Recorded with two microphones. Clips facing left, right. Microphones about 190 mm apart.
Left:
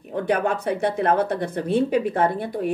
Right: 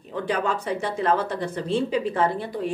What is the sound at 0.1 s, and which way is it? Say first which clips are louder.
A woman's voice: left 3 dB; 60° left (ahead or behind).